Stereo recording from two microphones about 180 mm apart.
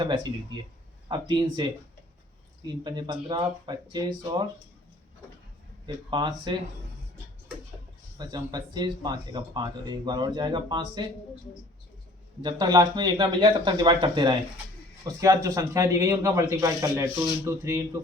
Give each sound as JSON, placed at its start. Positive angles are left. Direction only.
{"t": 0.0, "sound": "speech", "side_deg": -25}
{"t": 2.6, "sound": "speech", "side_deg": -25}
{"t": 5.8, "sound": "speech", "side_deg": -25}
{"t": 8.2, "sound": "speech", "side_deg": -25}
{"t": 12.4, "sound": "speech", "side_deg": -25}